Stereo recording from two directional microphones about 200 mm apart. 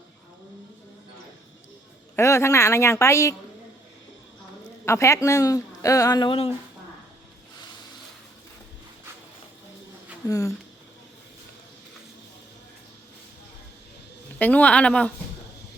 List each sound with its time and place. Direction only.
2.1 s speech: 15° left (ahead or behind)
4.9 s speech: 15° left (ahead or behind)
10.2 s speech: 15° left (ahead or behind)
14.3 s speech: 5° left (ahead or behind)